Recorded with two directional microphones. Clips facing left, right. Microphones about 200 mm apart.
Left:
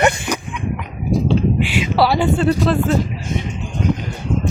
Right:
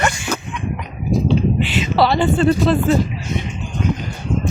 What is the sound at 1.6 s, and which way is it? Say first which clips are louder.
Speech: even; 10° left (ahead or behind).